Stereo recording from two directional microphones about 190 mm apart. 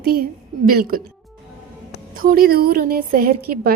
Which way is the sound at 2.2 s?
50° right (ahead or behind).